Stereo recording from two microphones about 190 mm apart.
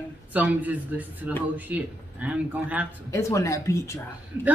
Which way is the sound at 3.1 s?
15° left (ahead or behind).